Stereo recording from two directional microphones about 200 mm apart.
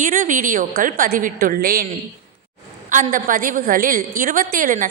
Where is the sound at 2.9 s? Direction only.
40° right (ahead or behind).